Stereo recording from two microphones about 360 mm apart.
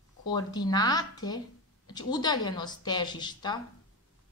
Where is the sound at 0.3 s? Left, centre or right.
Centre.